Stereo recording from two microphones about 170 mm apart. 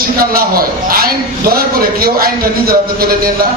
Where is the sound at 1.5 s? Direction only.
60° right (ahead or behind).